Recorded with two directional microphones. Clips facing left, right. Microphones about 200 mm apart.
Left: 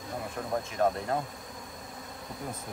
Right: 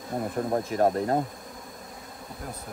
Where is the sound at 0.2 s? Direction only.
40° right (ahead or behind).